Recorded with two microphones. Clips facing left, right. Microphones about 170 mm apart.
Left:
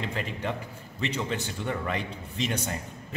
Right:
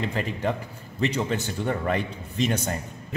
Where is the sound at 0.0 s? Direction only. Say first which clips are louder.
Right 5 dB; 40° right (ahead or behind).